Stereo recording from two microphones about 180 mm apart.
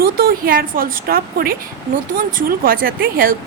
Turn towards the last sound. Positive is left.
turn(degrees=-55)  # may be behind; listen again after turning